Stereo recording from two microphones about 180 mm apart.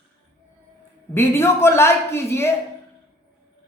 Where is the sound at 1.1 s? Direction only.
15° left (ahead or behind).